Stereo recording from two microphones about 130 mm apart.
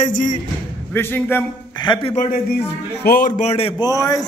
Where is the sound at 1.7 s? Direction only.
35° left (ahead or behind).